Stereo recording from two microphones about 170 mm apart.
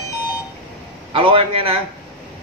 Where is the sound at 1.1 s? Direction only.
30° right (ahead or behind).